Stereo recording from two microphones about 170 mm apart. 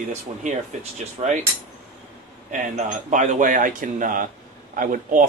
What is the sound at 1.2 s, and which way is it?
Speech, 30° right (ahead or behind).